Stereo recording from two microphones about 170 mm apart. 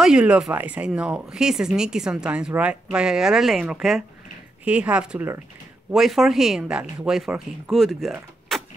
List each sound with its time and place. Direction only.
0.0 s speech: 5° right (ahead or behind)